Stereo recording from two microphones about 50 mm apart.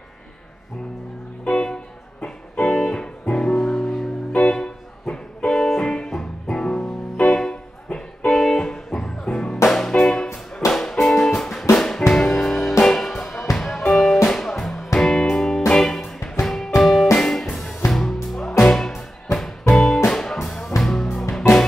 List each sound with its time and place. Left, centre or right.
1.4 s music: centre
16.0 s music: centre